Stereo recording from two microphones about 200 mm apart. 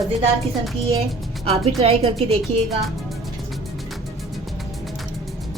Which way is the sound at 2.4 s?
Centre (ahead or behind).